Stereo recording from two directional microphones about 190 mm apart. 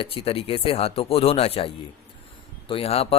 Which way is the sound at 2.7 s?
30° left (ahead or behind).